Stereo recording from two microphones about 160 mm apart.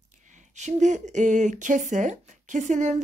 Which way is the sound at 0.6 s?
50° right (ahead or behind).